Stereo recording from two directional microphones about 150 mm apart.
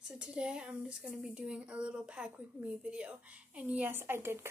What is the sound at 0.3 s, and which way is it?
Speech, 5° right (ahead or behind).